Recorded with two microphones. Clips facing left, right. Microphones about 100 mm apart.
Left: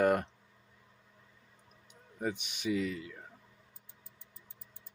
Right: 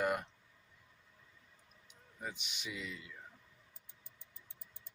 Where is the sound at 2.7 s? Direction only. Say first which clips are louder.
Left 14 dB; 50° left (ahead or behind).